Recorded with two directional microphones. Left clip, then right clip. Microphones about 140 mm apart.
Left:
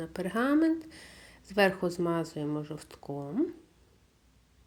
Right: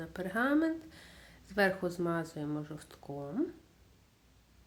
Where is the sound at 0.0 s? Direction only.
20° left (ahead or behind).